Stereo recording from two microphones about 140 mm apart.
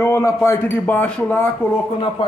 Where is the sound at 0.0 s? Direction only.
20° left (ahead or behind).